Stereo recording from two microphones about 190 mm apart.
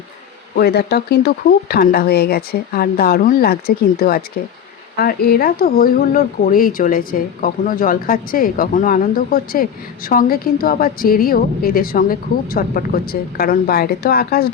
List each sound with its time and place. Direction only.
0.5 s speech: 55° left (ahead or behind)